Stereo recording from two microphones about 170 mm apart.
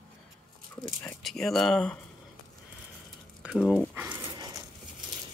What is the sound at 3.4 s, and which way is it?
Speech, 5° right (ahead or behind).